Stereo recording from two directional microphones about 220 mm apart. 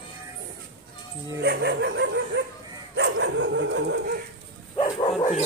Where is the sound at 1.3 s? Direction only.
50° right (ahead or behind).